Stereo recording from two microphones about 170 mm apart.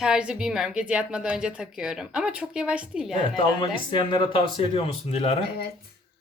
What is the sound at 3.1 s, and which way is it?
Speech, 25° left (ahead or behind).